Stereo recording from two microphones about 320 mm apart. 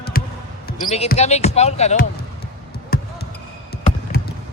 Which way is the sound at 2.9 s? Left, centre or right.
Left.